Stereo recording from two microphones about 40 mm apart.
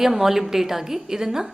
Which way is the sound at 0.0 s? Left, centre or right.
Centre.